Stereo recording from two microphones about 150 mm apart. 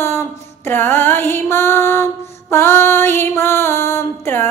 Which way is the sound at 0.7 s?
15° left (ahead or behind).